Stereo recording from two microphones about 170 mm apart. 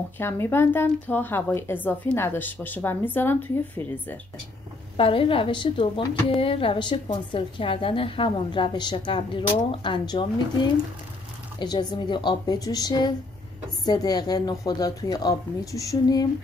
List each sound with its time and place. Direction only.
0.2 s a woman's voice: 15° left (ahead or behind)
4.9 s a woman's voice: 30° left (ahead or behind)